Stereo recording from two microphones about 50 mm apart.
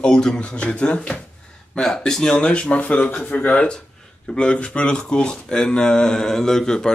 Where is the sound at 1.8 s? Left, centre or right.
Centre.